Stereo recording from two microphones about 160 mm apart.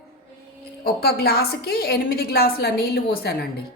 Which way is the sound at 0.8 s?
80° left.